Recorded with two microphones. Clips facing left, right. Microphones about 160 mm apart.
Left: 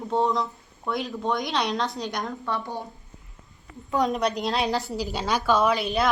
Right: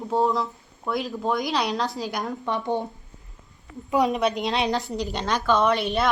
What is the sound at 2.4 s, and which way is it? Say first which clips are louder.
Speech: right 5 dB; 20° right (ahead or behind).